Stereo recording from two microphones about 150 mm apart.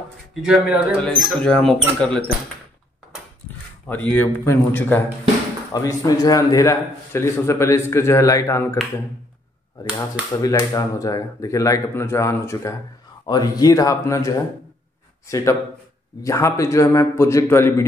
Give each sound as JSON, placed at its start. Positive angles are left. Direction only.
{"t": 0.3, "sound": "speech", "side_deg": -5}
{"t": 1.0, "sound": "speech", "side_deg": 5}
{"t": 3.8, "sound": "speech", "side_deg": 10}
{"t": 9.8, "sound": "speech", "side_deg": 20}